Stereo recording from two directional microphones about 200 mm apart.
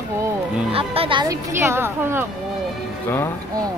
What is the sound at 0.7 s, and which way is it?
Speech, 30° right (ahead or behind).